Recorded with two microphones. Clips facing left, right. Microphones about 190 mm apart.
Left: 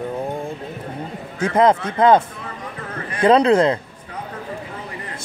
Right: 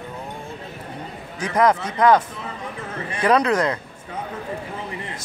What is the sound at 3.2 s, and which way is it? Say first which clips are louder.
Speech: left 5 dB; 25° left (ahead or behind).